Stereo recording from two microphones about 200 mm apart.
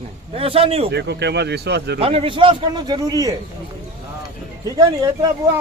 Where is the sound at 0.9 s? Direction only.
60° right (ahead or behind).